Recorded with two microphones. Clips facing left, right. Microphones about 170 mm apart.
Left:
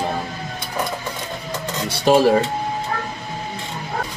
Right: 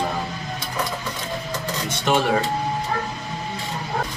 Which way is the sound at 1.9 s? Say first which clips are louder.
Left 7 dB; 35° left (ahead or behind).